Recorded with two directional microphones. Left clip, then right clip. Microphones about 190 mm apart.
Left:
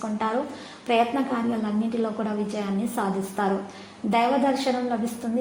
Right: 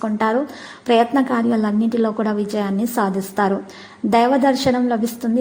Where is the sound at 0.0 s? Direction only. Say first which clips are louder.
Right 7 dB; 40° right (ahead or behind).